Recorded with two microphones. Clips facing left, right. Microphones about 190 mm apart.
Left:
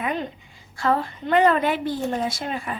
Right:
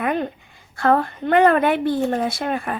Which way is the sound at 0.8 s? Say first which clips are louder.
Right 5 dB; 55° right (ahead or behind).